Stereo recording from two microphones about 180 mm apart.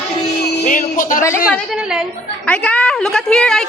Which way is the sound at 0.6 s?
50° left (ahead or behind).